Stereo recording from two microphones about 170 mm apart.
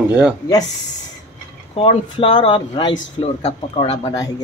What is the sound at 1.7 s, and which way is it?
Speech, 30° left (ahead or behind).